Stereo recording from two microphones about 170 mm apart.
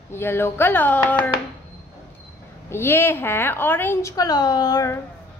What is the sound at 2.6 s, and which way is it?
A woman's voice, 15° left (ahead or behind).